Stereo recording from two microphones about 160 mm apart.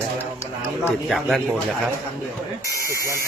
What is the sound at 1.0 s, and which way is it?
Speech, centre (ahead or behind).